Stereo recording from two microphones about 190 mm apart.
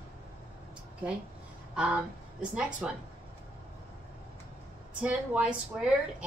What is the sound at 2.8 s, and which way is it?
Speech, 5° right (ahead or behind).